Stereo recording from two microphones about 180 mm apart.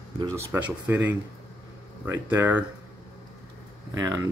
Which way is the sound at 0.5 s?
10° right (ahead or behind).